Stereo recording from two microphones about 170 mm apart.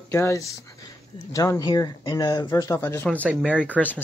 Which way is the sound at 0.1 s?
15° left (ahead or behind).